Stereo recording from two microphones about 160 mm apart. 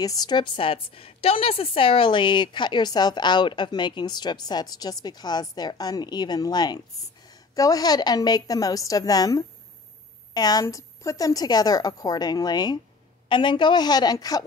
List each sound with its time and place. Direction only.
0.0 s a woman's voice: 25° left (ahead or behind)